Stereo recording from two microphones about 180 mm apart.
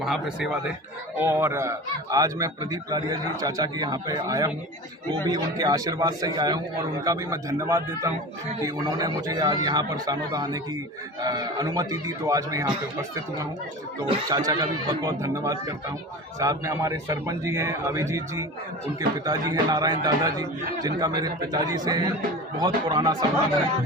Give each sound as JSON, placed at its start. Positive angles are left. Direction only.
{"t": 0.0, "sound": "a man's voice", "side_deg": 0}